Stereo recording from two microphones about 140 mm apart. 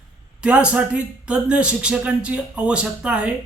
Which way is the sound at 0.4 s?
10° right (ahead or behind).